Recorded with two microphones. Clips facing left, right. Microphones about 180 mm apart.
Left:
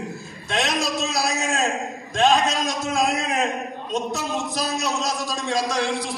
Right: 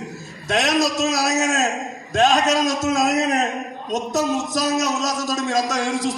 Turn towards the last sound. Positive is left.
turn(degrees=-45)  # may be behind; listen again after turning